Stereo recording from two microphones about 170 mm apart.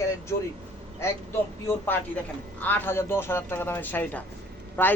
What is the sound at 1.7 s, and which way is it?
Speech, 10° left (ahead or behind).